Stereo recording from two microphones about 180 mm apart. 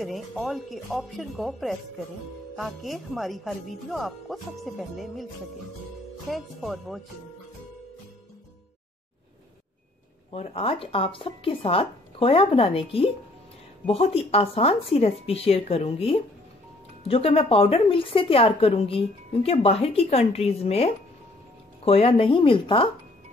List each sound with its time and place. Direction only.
0.0 s speech: centre (ahead or behind)
6.3 s speech: centre (ahead or behind)
10.3 s a woman's voice: 35° left (ahead or behind)